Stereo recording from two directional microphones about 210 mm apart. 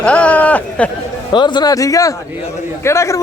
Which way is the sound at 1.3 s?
20° left (ahead or behind).